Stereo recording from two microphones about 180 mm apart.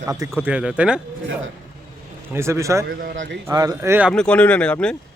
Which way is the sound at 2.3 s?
15° right (ahead or behind).